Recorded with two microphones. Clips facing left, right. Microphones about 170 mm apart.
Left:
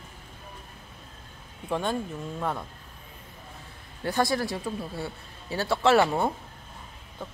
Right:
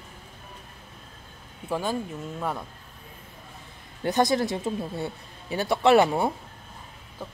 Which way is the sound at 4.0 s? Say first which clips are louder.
Right 3 dB; 20° right (ahead or behind).